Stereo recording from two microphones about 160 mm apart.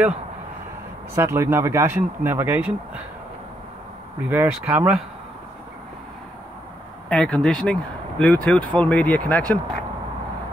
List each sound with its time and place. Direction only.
1.1 s speech: 15° right (ahead or behind)
4.3 s speech: 10° right (ahead or behind)
7.1 s speech: 5° left (ahead or behind)